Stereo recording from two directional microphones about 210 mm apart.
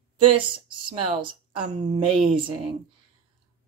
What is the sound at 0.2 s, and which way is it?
Speech, 25° right (ahead or behind).